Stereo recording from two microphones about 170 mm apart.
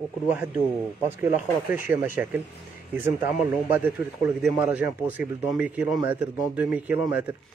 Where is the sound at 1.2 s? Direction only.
10° right (ahead or behind).